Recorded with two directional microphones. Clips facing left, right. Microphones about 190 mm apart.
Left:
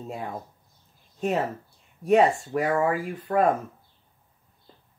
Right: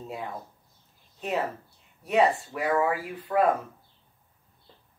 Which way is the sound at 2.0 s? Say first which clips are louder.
Left 4 dB; 45° left (ahead or behind).